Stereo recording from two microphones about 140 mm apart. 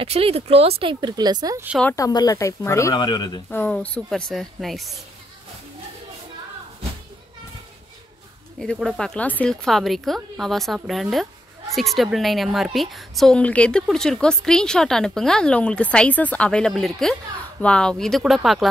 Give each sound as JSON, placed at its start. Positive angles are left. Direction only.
{"t": 0.0, "sound": "speech", "side_deg": -45}
{"t": 2.0, "sound": "speech", "side_deg": 25}
{"t": 3.0, "sound": "speech", "side_deg": 30}
{"t": 3.4, "sound": "a woman's voice", "side_deg": 10}
{"t": 8.5, "sound": "a woman's voice", "side_deg": 0}